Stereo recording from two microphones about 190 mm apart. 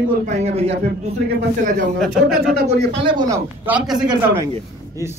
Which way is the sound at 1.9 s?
Centre (ahead or behind).